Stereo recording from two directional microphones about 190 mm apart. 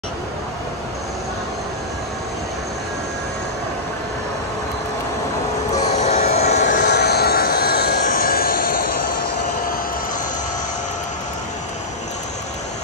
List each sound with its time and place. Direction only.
5.9 s vehicle: 35° left (ahead or behind)
6.8 s vehicle: 60° left (ahead or behind)